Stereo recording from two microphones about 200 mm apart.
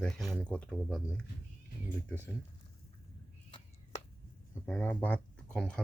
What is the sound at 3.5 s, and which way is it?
Chop, 25° left (ahead or behind).